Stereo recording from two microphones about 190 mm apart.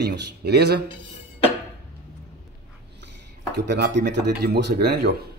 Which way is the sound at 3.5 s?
65° right (ahead or behind).